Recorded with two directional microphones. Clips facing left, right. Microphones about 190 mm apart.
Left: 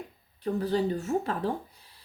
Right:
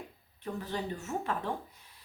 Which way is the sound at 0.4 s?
35° left (ahead or behind).